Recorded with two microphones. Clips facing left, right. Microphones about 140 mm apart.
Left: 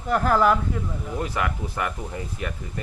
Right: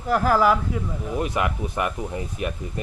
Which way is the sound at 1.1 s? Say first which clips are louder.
Right 3 dB; 20° right (ahead or behind).